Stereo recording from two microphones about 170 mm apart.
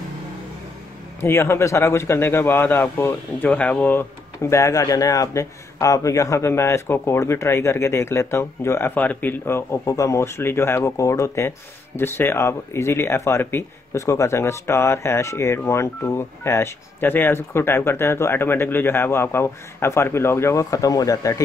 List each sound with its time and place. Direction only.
1.2 s speech: 15° left (ahead or behind)